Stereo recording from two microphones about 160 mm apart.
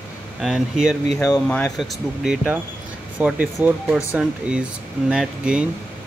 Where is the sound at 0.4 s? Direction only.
5° right (ahead or behind).